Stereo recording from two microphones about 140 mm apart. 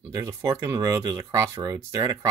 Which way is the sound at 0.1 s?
25° right (ahead or behind).